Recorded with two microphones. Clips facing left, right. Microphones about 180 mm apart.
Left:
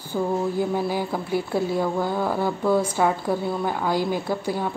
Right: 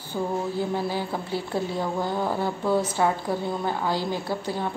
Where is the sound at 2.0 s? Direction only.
15° right (ahead or behind).